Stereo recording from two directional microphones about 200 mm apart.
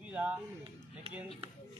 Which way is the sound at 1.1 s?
30° right (ahead or behind).